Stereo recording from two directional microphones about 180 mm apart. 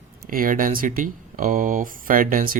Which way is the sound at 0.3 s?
50° right (ahead or behind).